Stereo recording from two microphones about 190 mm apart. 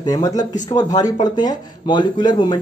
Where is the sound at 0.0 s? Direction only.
20° left (ahead or behind).